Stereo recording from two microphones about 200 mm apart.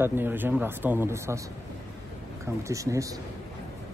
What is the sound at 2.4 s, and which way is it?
Speech, 15° right (ahead or behind).